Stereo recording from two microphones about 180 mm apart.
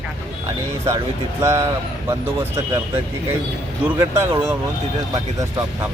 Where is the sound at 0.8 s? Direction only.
15° right (ahead or behind).